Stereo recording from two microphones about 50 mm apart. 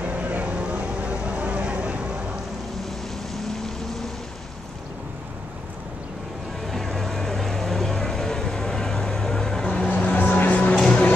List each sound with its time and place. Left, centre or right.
0.1 s vehicle: right
6.7 s vehicle: centre
10.1 s music: left